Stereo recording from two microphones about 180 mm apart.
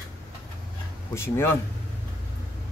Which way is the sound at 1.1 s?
15° left (ahead or behind).